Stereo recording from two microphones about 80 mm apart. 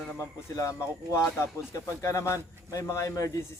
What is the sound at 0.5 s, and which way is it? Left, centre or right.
Speech, left.